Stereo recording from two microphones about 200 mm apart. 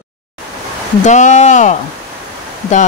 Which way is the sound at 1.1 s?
35° left (ahead or behind).